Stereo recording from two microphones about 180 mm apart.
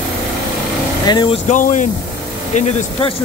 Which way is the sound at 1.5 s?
45° left (ahead or behind).